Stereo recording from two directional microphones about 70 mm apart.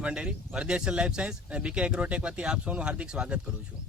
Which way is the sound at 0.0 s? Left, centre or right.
Centre.